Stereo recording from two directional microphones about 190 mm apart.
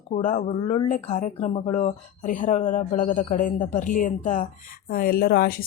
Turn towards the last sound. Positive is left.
turn(degrees=50)  # may be behind; listen again after turning